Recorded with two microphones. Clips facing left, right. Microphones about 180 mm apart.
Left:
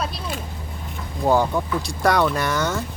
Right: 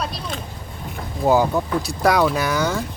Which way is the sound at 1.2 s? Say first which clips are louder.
Right 2 dB; 10° right (ahead or behind).